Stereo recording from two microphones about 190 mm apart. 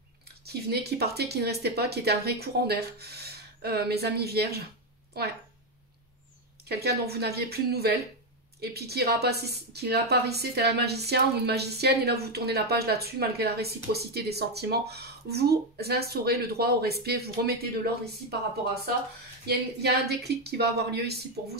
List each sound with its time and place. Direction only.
0.5 s speech: 55° right (ahead or behind)
6.7 s speech: 55° right (ahead or behind)
19.4 s speech: 55° right (ahead or behind)